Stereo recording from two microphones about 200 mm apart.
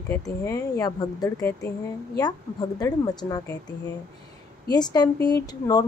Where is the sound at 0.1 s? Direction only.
15° left (ahead or behind).